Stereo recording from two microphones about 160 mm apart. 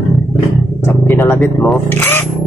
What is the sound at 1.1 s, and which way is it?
Speech, 15° left (ahead or behind).